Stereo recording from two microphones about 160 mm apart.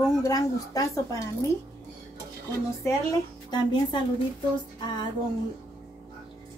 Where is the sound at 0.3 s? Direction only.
20° left (ahead or behind).